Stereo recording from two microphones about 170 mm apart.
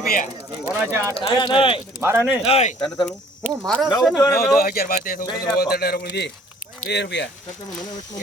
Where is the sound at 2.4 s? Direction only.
40° left (ahead or behind).